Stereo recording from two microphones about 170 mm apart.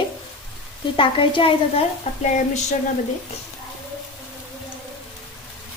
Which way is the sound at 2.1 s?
40° left (ahead or behind).